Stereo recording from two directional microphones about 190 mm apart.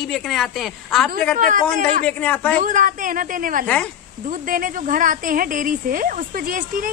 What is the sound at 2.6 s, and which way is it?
A woman's voice, 40° right (ahead or behind).